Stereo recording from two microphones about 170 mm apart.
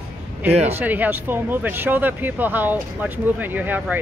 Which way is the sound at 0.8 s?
10° right (ahead or behind).